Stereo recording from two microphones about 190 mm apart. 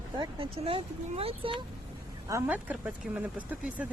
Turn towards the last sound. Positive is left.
turn(degrees=-5)  # may be behind; listen again after turning